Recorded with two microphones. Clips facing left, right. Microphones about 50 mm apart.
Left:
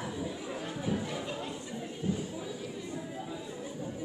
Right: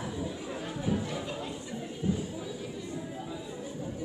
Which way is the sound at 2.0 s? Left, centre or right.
Right.